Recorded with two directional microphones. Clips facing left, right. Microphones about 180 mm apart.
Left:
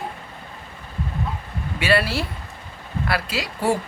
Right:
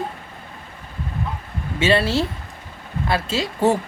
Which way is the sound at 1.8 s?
25° right (ahead or behind).